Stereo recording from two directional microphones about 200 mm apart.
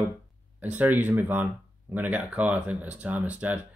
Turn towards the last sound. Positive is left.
turn(degrees=-10)  # may be behind; listen again after turning